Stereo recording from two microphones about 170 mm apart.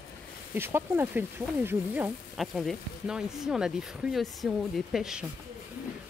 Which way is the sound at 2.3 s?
Centre (ahead or behind).